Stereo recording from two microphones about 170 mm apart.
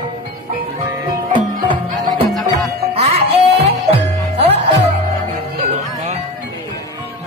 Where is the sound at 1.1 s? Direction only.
30° right (ahead or behind).